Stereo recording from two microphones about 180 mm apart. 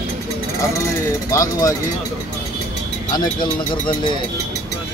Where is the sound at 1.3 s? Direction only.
20° left (ahead or behind).